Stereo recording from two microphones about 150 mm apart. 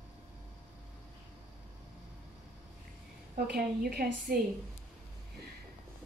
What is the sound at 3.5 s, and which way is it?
Speech, 90° right.